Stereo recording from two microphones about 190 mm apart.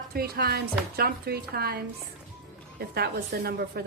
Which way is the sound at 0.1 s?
55° right (ahead or behind).